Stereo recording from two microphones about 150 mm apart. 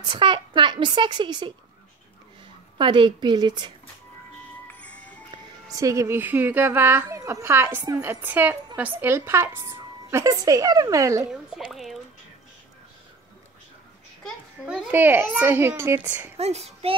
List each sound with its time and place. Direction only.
0.1 s speech: 30° right (ahead or behind)
2.8 s speech: 35° right (ahead or behind)
4.6 s music: 10° left (ahead or behind)
5.8 s a woman's voice: 20° right (ahead or behind)
11.5 s speech: centre (ahead or behind)
14.2 s a sound: centre (ahead or behind)
14.9 s a woman's voice: 10° right (ahead or behind)
16.3 s a child's voice: 45° right (ahead or behind)